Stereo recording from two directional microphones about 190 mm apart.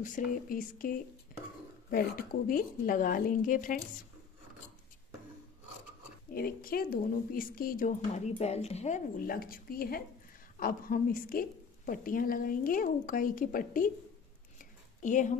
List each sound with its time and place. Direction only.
0.0 s speech: 45° left (ahead or behind)
6.3 s speech: 50° left (ahead or behind)
15.0 s speech: 40° left (ahead or behind)